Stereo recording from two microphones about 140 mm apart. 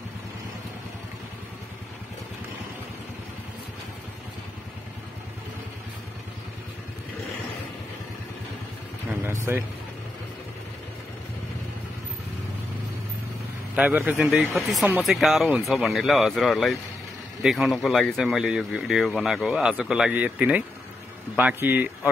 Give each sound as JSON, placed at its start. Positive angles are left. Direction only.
{"t": 9.5, "sound": "speech", "side_deg": -15}
{"t": 13.7, "sound": "speech", "side_deg": -10}